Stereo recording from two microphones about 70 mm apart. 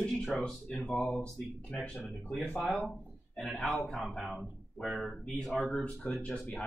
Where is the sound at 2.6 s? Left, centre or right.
Centre.